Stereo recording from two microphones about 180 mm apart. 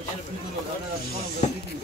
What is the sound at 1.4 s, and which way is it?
Speech, 40° left (ahead or behind).